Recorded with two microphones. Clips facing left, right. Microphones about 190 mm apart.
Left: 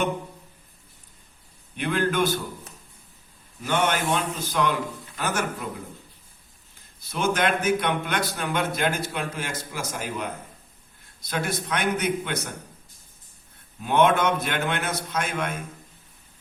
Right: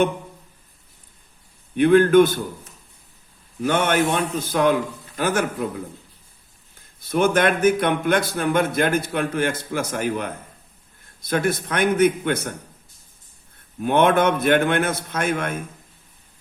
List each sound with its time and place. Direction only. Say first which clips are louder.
1.7 s speech: right 12 dB; 55° right (ahead or behind)
3.6 s speech: right 5 dB; 50° right (ahead or behind)
7.1 s speech: right 6 dB; 55° right (ahead or behind)
13.8 s speech: right 3 dB; 55° right (ahead or behind)